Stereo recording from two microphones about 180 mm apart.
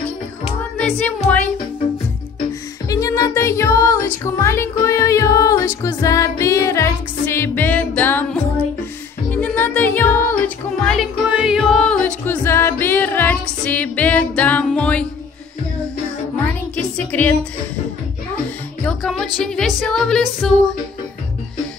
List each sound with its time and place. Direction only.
0.7 s music: 5° left (ahead or behind)
2.9 s music: 20° left (ahead or behind)
16.7 s music: 10° left (ahead or behind)
18.9 s music: centre (ahead or behind)